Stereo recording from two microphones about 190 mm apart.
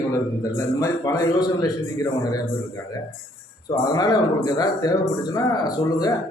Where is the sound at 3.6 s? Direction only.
20° left (ahead or behind).